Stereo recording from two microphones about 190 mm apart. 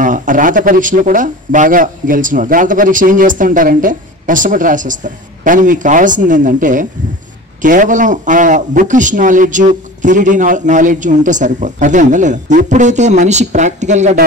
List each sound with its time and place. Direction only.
0.0 s a man's voice: 45° right (ahead or behind)